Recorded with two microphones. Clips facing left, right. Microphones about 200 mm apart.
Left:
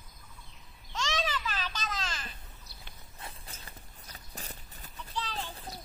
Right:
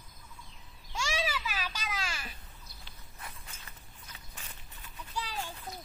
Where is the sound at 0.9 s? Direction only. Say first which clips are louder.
Left 1 dB; 10° right (ahead or behind).